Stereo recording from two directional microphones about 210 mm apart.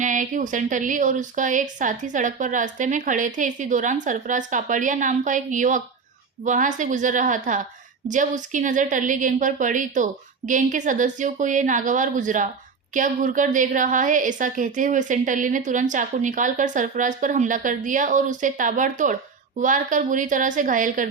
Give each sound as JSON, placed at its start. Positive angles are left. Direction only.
{"t": 0.0, "sound": "a woman's voice", "side_deg": -35}